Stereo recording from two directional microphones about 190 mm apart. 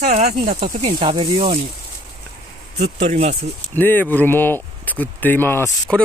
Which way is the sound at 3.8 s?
10° left (ahead or behind).